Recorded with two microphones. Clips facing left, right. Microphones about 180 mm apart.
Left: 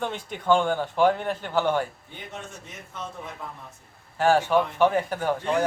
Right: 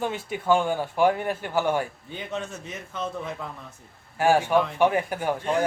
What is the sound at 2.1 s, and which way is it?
Speech, 75° right (ahead or behind).